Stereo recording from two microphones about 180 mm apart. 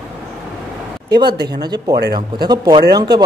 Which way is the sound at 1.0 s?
25° right (ahead or behind).